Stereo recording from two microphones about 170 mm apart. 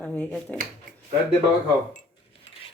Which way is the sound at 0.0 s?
10° left (ahead or behind).